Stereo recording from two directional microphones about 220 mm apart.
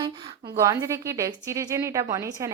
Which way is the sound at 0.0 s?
20° right (ahead or behind).